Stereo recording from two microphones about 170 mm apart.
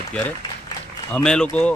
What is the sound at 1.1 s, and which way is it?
Speech, 5° left (ahead or behind).